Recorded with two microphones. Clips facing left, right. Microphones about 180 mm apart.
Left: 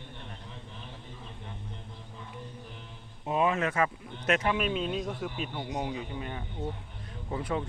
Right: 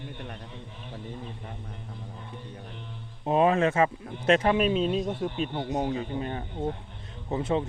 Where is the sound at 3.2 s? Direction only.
35° right (ahead or behind).